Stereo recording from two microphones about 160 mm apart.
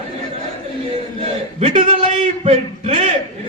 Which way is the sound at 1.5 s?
35° right (ahead or behind).